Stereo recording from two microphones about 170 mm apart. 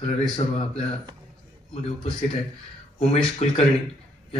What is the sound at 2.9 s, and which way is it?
Speech, 40° left (ahead or behind).